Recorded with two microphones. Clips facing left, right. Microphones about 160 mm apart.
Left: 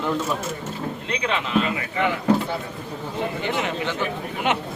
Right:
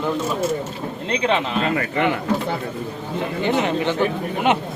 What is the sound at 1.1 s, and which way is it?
Speech, 30° right (ahead or behind).